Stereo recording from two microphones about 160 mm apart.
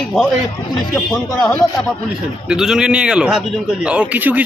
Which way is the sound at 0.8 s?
5° left (ahead or behind).